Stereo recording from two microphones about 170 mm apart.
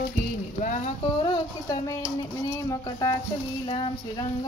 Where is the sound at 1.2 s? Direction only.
25° left (ahead or behind).